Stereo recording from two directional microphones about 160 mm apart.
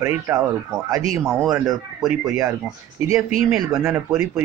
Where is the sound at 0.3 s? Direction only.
15° right (ahead or behind).